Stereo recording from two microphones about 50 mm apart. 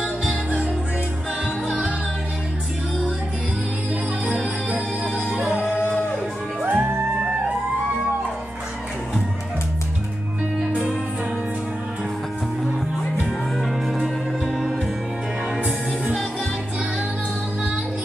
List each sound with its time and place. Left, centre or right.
0.3 s music: right
4.6 s music: right
5.1 s music: centre; by 6.9 s right